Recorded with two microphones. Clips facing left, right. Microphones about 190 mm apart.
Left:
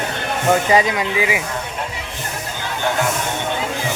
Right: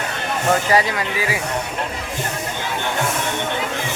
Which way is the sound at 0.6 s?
20° left (ahead or behind).